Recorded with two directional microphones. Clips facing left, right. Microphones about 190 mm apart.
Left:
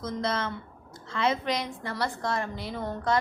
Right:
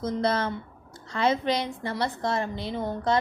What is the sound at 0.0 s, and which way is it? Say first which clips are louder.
A woman's voice: right 4 dB; 35° right (ahead or behind).